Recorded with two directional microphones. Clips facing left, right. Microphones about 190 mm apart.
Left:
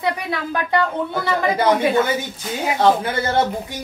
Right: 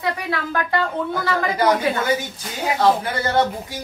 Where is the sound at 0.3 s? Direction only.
20° left (ahead or behind).